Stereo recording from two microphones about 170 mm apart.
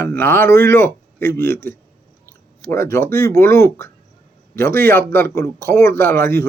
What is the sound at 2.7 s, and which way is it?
A man's voice, 15° left (ahead or behind).